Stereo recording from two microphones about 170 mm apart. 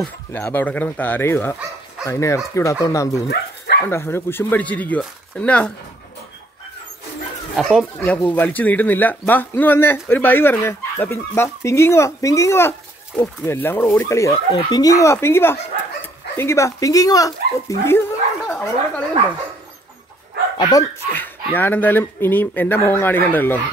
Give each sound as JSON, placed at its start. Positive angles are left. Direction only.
{"t": 0.0, "sound": "speech", "side_deg": 10}
{"t": 3.3, "sound": "dog", "side_deg": 80}
{"t": 3.8, "sound": "speech", "side_deg": 15}
{"t": 8.0, "sound": "speech", "side_deg": 10}
{"t": 20.5, "sound": "speech", "side_deg": 25}